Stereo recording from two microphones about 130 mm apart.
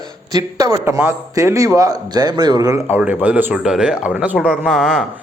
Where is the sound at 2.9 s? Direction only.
10° right (ahead or behind).